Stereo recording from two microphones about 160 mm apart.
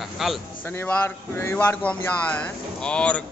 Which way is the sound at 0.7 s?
15° left (ahead or behind).